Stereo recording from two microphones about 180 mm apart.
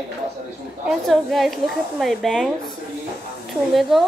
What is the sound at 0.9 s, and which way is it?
A woman's voice, centre (ahead or behind).